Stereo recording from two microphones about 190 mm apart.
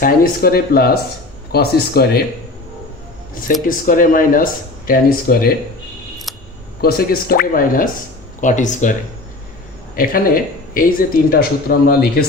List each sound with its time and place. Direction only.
0.0 s speech: 50° left (ahead or behind)
3.5 s speech: 45° left (ahead or behind)
6.3 s a sound: centre (ahead or behind)
6.8 s speech: 50° left (ahead or behind)